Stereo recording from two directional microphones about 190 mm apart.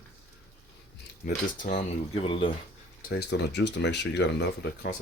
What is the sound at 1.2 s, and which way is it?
Speech, 45° left (ahead or behind).